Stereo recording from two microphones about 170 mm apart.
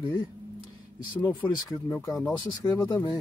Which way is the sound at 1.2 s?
15° left (ahead or behind).